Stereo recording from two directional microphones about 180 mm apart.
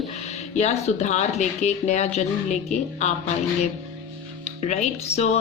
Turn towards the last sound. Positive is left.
turn(degrees=40)  # may be behind; listen again after turning